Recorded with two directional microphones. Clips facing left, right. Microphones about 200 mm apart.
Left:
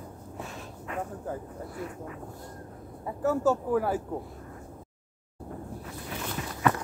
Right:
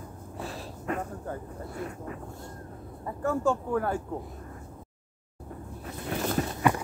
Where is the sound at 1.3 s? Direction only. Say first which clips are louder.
Left 2 dB; 5° left (ahead or behind).